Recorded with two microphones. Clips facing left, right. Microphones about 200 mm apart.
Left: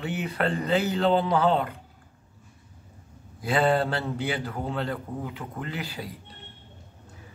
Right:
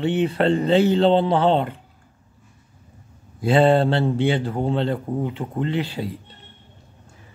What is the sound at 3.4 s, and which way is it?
Speech, 25° right (ahead or behind).